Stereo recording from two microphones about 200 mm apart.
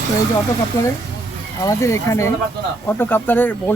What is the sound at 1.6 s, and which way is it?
Speech, 15° left (ahead or behind).